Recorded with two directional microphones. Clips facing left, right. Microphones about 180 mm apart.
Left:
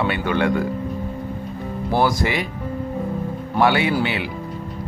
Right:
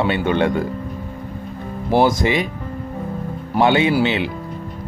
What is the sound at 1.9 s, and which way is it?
Speech, 20° right (ahead or behind).